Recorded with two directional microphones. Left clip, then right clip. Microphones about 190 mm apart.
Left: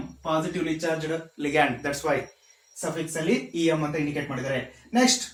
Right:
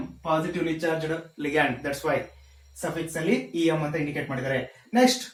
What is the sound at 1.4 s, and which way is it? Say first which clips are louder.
Speech: left 1 dB; 20° left (ahead or behind).